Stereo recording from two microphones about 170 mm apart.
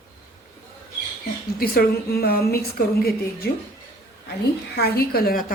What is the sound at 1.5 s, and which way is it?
A woman's voice, 65° left (ahead or behind).